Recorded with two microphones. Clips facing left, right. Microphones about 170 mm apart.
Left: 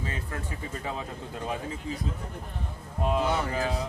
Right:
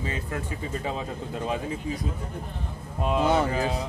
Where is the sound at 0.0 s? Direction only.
20° right (ahead or behind).